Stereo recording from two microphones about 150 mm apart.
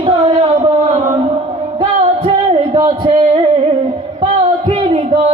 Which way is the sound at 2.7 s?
35° right (ahead or behind).